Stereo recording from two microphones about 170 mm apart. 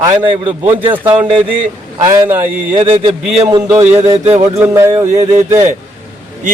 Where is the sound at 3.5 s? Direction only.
15° right (ahead or behind).